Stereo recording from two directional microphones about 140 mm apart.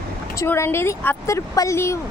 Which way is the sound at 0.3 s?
20° left (ahead or behind).